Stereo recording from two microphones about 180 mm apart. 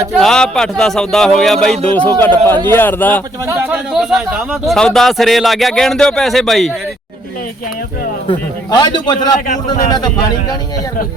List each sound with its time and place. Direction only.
0.2 s speech: 5° left (ahead or behind)
3.4 s a man's voice: 15° right (ahead or behind)
3.9 s speech: centre (ahead or behind)
8.3 s a man's voice: 25° left (ahead or behind)